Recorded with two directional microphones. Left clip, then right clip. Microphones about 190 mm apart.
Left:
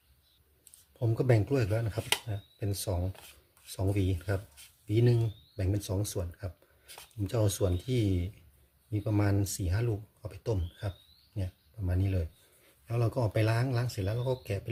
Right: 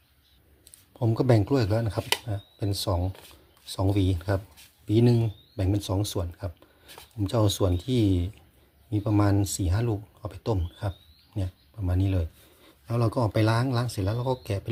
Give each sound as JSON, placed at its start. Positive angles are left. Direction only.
{"t": 0.9, "sound": "speech", "side_deg": -25}